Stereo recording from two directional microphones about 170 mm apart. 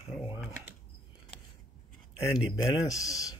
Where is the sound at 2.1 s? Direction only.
20° left (ahead or behind).